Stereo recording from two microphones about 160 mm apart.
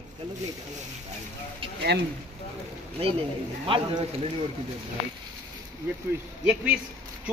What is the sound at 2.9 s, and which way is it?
Speech, 35° right (ahead or behind).